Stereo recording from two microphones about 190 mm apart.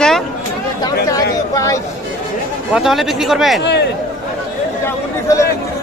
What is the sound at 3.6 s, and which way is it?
Speech, 60° left (ahead or behind).